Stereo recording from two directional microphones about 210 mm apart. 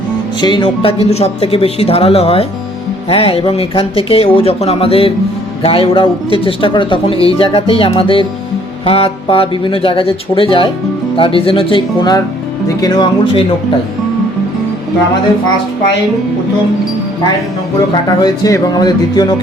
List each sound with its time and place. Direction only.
0.4 s speech: 25° left (ahead or behind)
18.2 s speech: 15° left (ahead or behind)